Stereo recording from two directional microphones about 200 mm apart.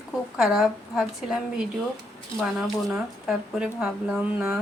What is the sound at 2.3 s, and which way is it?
Speech, centre (ahead or behind).